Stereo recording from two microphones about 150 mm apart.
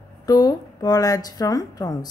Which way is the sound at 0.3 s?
25° left (ahead or behind).